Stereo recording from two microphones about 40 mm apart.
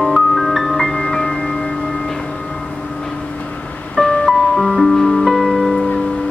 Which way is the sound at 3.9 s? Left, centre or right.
Centre.